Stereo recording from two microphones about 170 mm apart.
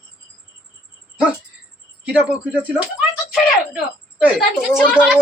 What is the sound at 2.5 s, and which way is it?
Speech, 10° right (ahead or behind).